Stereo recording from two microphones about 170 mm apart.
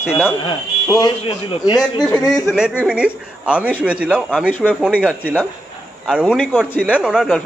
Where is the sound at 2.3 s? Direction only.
Centre (ahead or behind).